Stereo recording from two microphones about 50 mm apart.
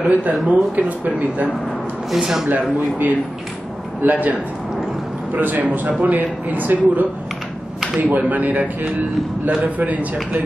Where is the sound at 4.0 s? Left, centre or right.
Right.